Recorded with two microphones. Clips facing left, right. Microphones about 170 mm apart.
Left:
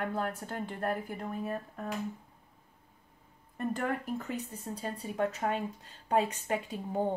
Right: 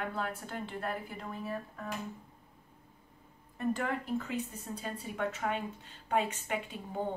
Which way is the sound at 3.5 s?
50° left (ahead or behind).